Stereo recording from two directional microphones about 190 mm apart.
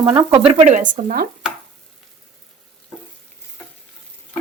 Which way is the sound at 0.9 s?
50° right (ahead or behind).